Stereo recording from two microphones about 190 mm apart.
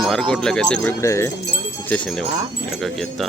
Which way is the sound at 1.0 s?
15° left (ahead or behind).